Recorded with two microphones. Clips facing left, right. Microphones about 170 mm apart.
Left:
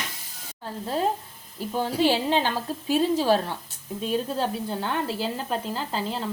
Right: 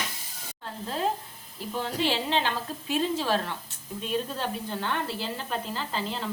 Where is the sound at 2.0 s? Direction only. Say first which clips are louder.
Left 5 dB; 45° left (ahead or behind).